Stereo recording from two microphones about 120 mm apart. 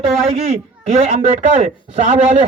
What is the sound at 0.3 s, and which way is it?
A man's voice, 70° right (ahead or behind).